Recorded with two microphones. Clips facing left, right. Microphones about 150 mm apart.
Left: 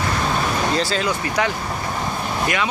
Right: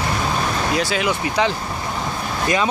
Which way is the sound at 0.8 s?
15° right (ahead or behind).